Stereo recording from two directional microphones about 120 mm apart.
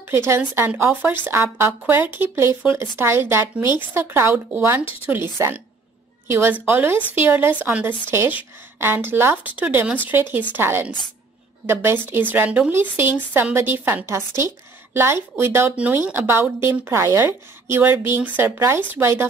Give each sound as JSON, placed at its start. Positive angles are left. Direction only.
{"t": 0.4, "sound": "a woman's voice", "side_deg": -15}